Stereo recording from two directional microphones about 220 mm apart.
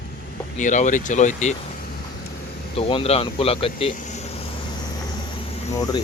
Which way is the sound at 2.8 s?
25° left (ahead or behind).